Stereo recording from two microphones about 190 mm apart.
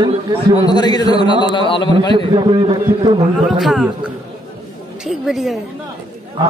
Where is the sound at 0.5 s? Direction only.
20° left (ahead or behind).